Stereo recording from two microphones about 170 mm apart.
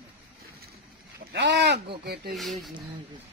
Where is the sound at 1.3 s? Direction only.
85° right.